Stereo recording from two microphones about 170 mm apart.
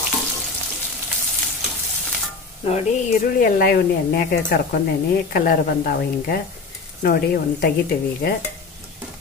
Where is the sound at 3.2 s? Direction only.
55° left (ahead or behind).